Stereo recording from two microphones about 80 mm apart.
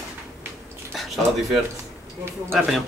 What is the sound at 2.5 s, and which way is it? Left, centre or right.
Speech, centre.